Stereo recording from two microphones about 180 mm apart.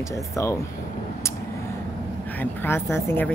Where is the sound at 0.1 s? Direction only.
15° left (ahead or behind).